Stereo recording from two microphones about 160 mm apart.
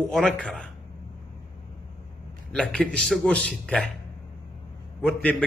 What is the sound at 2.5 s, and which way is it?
A man's voice, 5° left (ahead or behind).